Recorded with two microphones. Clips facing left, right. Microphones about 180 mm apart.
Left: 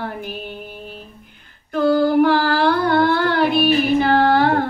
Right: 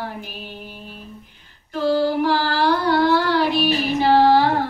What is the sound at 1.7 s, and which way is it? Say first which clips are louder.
Child singing: left 4 dB; 55° left (ahead or behind).